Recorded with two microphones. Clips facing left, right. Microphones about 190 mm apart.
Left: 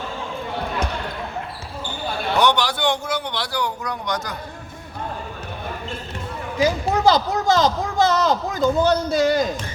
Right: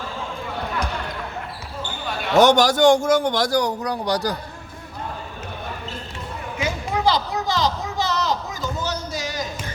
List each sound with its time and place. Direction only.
2.3 s a man's voice: 45° right (ahead or behind)
6.6 s speech: 45° left (ahead or behind)